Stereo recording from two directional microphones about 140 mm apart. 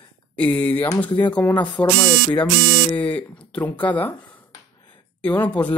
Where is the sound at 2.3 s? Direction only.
35° left (ahead or behind).